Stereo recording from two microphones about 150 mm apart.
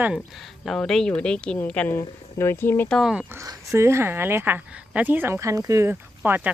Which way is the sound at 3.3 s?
20° right (ahead or behind).